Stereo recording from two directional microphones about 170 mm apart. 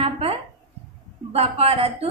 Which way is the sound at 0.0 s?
35° right (ahead or behind).